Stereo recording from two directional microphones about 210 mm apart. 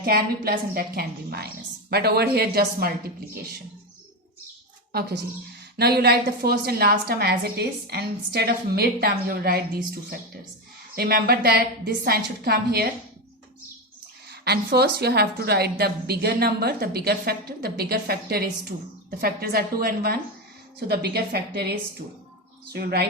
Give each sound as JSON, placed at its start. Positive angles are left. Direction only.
{"t": 0.0, "sound": "a woman's voice", "side_deg": -45}
{"t": 4.9, "sound": "a woman's voice", "side_deg": -50}
{"t": 14.3, "sound": "a woman's voice", "side_deg": -50}